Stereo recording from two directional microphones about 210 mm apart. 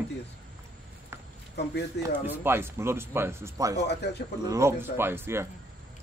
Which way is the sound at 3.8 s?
55° left (ahead or behind).